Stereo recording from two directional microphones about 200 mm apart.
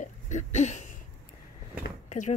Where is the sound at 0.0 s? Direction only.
35° left (ahead or behind).